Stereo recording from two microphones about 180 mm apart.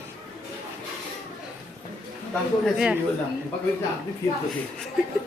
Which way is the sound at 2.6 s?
5° right (ahead or behind).